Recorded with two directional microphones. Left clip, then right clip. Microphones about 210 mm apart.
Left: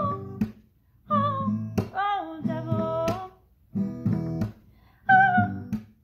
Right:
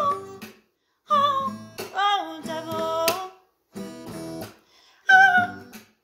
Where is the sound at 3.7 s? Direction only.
5° right (ahead or behind).